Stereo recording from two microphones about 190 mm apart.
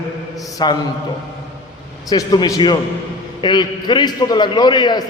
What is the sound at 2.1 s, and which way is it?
A man's voice, 20° left (ahead or behind).